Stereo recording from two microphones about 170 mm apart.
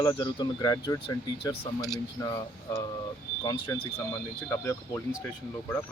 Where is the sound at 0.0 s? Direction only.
25° left (ahead or behind).